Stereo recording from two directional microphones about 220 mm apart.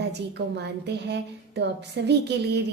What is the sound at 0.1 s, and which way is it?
A woman's voice, 50° right (ahead or behind).